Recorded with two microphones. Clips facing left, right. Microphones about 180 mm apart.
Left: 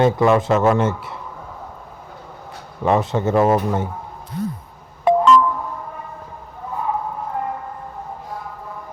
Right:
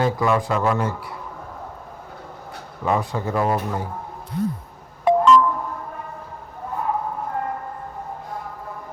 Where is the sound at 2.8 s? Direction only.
25° left (ahead or behind).